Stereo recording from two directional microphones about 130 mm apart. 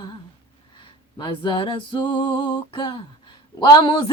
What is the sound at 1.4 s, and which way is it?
Music, 40° left (ahead or behind).